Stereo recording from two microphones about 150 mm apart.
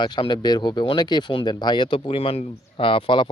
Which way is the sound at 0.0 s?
30° left (ahead or behind).